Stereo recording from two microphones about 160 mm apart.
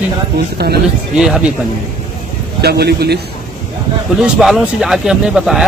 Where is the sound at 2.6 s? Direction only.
90° right.